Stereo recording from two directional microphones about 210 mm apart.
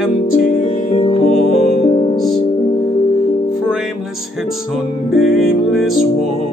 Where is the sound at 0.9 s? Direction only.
30° left (ahead or behind).